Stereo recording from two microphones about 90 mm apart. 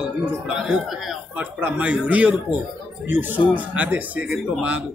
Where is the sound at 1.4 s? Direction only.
15° right (ahead or behind).